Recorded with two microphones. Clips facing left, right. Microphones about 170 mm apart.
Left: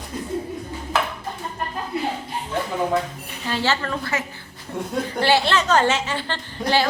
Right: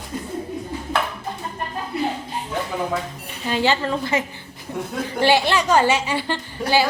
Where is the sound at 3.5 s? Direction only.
15° right (ahead or behind).